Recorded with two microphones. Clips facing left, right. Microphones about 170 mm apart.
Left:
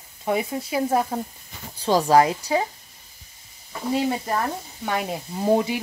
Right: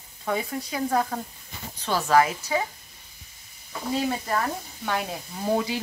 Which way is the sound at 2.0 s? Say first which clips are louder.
Left 1 dB; 35° left (ahead or behind).